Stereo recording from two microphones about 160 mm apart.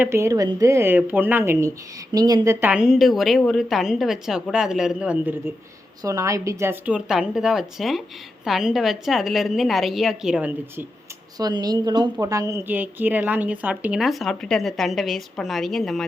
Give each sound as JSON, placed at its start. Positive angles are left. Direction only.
{"t": 0.0, "sound": "a woman's voice", "side_deg": -15}
{"t": 6.0, "sound": "a woman's voice", "side_deg": -20}
{"t": 11.3, "sound": "a woman's voice", "side_deg": -25}